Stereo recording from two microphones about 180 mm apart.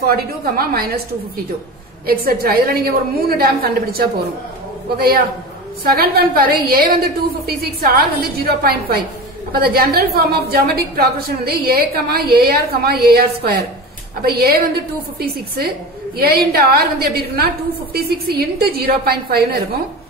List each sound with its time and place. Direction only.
0.0 s a woman's voice: 55° right (ahead or behind)